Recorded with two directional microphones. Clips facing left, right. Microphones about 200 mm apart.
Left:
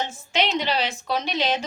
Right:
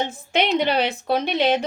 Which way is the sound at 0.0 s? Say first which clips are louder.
Right 3 dB; 55° right (ahead or behind).